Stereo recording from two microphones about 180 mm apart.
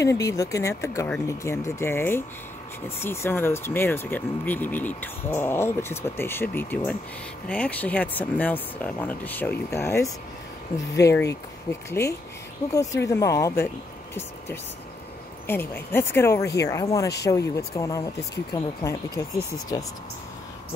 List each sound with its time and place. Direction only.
0.0 s speech: 15° left (ahead or behind)
15.4 s speech: 10° left (ahead or behind)